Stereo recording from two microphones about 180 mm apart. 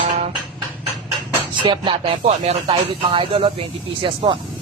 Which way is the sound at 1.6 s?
25° right (ahead or behind).